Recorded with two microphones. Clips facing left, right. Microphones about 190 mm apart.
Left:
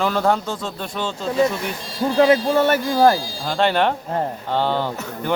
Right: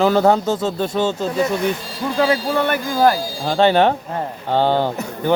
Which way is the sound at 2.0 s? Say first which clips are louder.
Left 3 dB; 35° left (ahead or behind).